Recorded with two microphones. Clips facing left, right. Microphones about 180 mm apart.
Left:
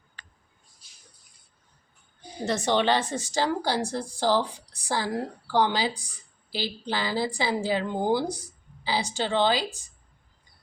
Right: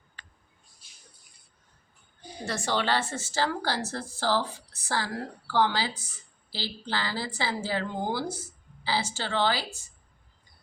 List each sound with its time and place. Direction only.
2.4 s a woman's voice: 20° left (ahead or behind)